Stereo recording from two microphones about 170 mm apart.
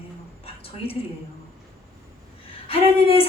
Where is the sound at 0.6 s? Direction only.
35° left (ahead or behind).